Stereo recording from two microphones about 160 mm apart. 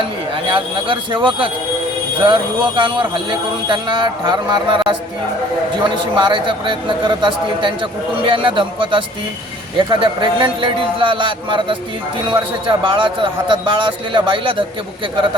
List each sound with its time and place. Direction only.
0.5 s a man's voice: 30° right (ahead or behind)